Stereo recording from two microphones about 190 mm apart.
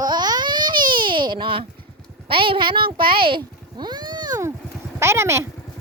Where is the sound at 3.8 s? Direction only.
20° right (ahead or behind).